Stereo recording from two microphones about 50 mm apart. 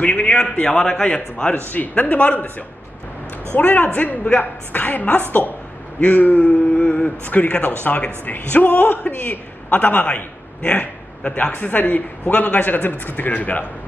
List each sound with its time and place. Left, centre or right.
0.0 s a man's voice: left
0.6 s a man's voice: centre
1.3 s a woman's voice: left
3.5 s a woman's voice: left